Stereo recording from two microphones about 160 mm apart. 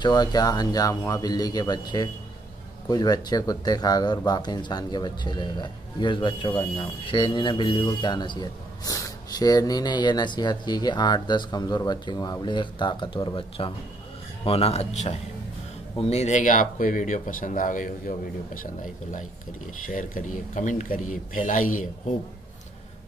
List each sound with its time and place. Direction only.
0.0 s speech: 25° left (ahead or behind); by 18.7 s 60° left (ahead or behind)
19.9 s speech: 55° left (ahead or behind)